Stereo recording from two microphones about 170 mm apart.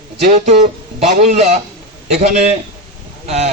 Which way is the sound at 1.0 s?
40° right (ahead or behind).